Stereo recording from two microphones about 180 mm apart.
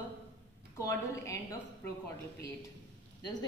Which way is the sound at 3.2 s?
25° left (ahead or behind).